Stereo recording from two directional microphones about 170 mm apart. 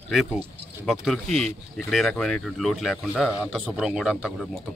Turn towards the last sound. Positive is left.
turn(degrees=-5)  # may be behind; listen again after turning